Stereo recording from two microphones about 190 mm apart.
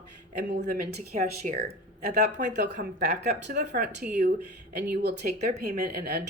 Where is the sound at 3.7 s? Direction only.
40° right (ahead or behind).